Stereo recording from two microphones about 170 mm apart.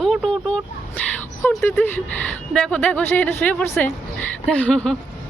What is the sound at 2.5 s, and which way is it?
A woman's voice, 5° left (ahead or behind).